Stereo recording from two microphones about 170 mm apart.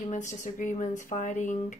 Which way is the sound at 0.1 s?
45° left (ahead or behind).